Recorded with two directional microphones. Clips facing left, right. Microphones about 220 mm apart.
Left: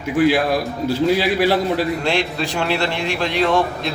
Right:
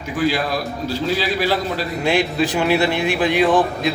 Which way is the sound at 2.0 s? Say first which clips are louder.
Right 3 dB; 5° right (ahead or behind).